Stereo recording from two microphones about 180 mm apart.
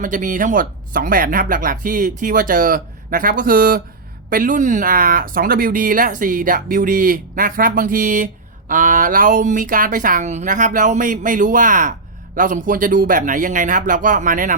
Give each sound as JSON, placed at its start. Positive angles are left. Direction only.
{"t": 0.0, "sound": "speech", "side_deg": -45}